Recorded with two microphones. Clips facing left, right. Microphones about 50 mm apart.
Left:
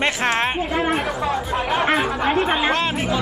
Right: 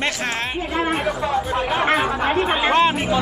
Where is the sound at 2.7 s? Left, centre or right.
Centre.